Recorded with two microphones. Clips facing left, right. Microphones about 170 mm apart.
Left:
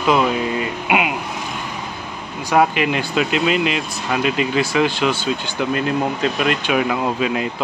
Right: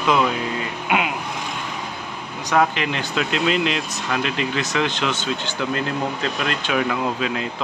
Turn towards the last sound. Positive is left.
turn(degrees=15)  # may be behind; listen again after turning